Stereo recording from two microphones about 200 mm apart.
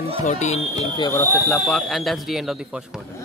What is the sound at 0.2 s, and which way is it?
Speech, 35° left (ahead or behind).